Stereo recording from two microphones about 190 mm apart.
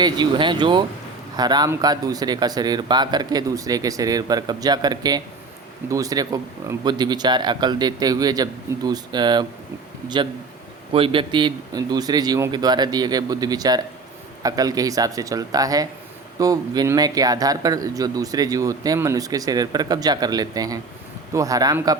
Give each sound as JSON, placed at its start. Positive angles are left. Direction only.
{"t": 0.0, "sound": "speech", "side_deg": -25}
{"t": 10.9, "sound": "speech", "side_deg": -30}